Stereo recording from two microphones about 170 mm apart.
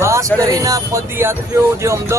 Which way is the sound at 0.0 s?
15° right (ahead or behind).